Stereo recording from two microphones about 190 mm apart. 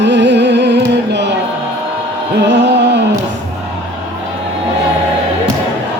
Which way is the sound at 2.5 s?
70° right (ahead or behind).